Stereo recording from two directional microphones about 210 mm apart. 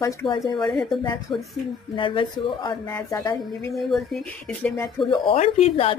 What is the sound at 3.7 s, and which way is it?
Speech, centre (ahead or behind).